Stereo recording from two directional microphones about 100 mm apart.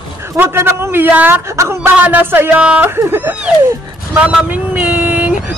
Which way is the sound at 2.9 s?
25° right (ahead or behind).